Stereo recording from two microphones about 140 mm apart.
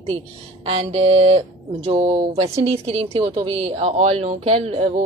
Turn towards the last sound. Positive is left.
turn(degrees=-50)  # may be behind; listen again after turning